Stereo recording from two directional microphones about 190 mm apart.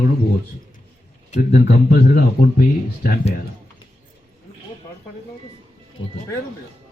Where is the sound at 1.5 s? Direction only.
55° left (ahead or behind).